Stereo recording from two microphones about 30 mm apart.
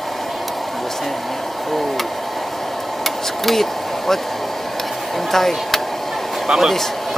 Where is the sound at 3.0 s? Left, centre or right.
Centre.